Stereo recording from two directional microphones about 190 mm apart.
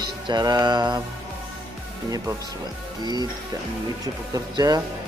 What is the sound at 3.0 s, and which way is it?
Mantra, 20° right (ahead or behind).